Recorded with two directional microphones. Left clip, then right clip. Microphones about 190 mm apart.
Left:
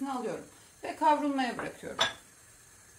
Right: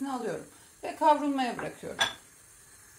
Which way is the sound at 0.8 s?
25° right (ahead or behind).